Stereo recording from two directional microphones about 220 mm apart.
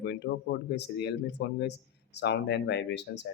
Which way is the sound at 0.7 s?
50° left (ahead or behind).